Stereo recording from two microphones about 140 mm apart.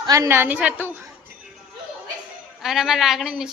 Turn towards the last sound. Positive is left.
turn(degrees=-5)  # may be behind; listen again after turning